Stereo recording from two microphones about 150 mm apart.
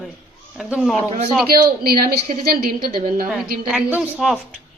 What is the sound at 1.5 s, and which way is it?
A woman's voice, 90° right.